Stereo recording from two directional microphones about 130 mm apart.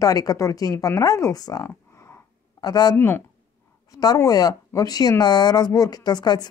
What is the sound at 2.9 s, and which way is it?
Speech, 15° left (ahead or behind).